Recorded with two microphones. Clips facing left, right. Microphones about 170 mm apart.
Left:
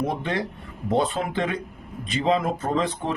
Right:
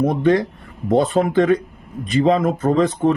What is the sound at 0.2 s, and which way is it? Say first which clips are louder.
Speech: right 11 dB; 45° right (ahead or behind).